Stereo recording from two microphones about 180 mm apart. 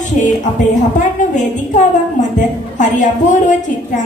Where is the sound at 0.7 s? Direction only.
45° left (ahead or behind).